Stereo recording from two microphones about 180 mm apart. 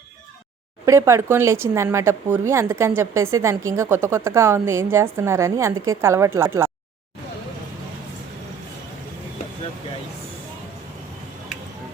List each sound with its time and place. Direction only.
0.9 s speech: 15° right (ahead or behind)